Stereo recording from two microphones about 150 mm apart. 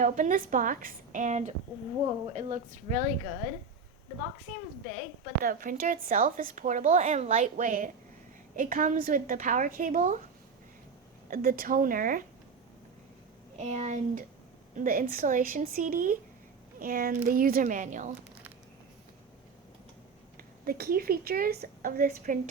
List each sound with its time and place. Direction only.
0.0 s a woman's voice: 60° right (ahead or behind)
5.4 s a woman's voice: 70° right (ahead or behind)
11.3 s a woman's voice: 70° right (ahead or behind)
13.6 s speech: 50° right (ahead or behind)
14.8 s a woman's voice: 70° right (ahead or behind)
20.3 s a woman's voice: 85° right; by 22.4 s 70° right (ahead or behind)